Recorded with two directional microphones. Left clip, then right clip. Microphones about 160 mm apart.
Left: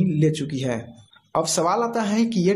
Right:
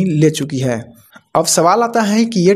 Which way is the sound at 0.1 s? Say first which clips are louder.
Right 8 dB; 30° right (ahead or behind).